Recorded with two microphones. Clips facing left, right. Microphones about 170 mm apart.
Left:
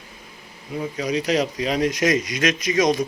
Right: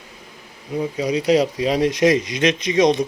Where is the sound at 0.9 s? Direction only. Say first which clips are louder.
Right 4 dB; 30° right (ahead or behind).